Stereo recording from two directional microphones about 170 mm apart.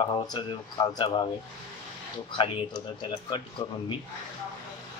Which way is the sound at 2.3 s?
30° left (ahead or behind).